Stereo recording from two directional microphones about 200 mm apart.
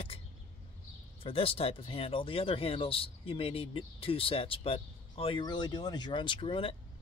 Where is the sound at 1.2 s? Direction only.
30° left (ahead or behind).